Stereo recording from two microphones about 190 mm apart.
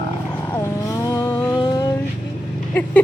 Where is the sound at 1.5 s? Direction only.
20° left (ahead or behind).